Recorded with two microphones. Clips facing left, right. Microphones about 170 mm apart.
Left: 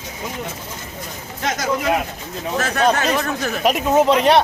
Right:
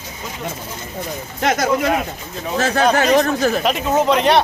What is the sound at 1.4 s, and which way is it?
Speech, 60° right (ahead or behind).